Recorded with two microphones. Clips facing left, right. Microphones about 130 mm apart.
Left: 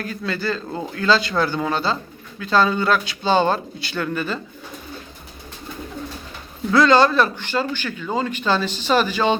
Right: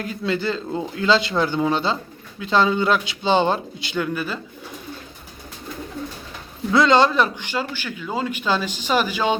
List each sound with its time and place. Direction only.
0.0 s speech: 20° right (ahead or behind)
4.0 s a man's voice: 10° right (ahead or behind)
6.7 s a man's voice: 20° right (ahead or behind)